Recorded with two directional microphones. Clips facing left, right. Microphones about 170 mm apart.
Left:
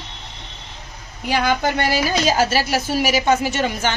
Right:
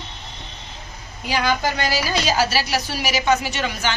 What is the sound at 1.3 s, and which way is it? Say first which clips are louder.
A woman's voice: left 2 dB; 55° left (ahead or behind).